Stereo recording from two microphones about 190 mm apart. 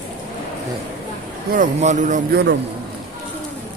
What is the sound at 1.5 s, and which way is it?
Speech, 40° right (ahead or behind).